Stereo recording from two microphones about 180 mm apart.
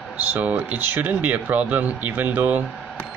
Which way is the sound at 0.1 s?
10° right (ahead or behind).